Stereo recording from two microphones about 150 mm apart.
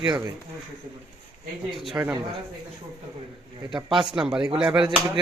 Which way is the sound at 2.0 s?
20° right (ahead or behind).